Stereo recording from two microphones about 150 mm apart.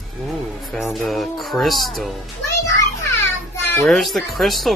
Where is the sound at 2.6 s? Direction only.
20° left (ahead or behind).